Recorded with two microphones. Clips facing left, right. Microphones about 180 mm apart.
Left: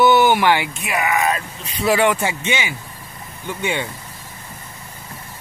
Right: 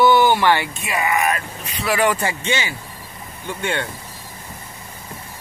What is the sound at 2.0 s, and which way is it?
Speech, 10° left (ahead or behind).